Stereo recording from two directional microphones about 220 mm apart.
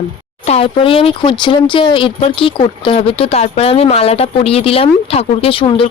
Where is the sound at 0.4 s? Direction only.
25° left (ahead or behind).